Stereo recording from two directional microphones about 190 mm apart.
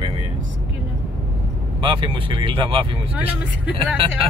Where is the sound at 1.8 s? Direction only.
25° right (ahead or behind).